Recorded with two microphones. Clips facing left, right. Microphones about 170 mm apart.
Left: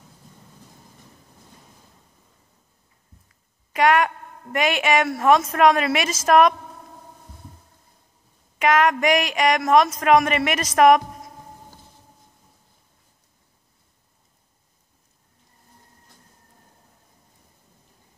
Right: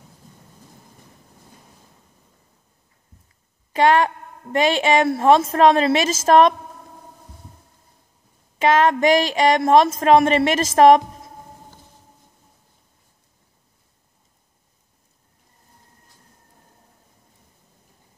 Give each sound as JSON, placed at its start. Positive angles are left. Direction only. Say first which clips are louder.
{"t": 3.7, "sound": "a woman's voice", "louder": "right 2 dB", "side_deg": -30}
{"t": 8.5, "sound": "a woman's voice", "louder": "right 2 dB", "side_deg": -25}